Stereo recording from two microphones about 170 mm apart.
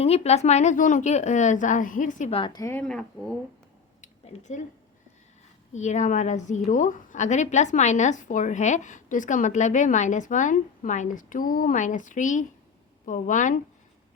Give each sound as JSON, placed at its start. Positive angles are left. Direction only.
{"t": 0.0, "sound": "a woman's voice", "side_deg": 35}
{"t": 2.3, "sound": "a woman's voice", "side_deg": 25}
{"t": 2.8, "sound": "speech", "side_deg": 5}
{"t": 4.0, "sound": "a sound", "side_deg": 45}
{"t": 5.7, "sound": "a woman's voice", "side_deg": 45}